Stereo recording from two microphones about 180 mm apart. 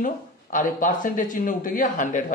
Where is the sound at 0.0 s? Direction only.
45° left (ahead or behind).